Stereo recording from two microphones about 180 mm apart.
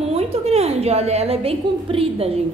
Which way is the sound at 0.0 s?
35° right (ahead or behind).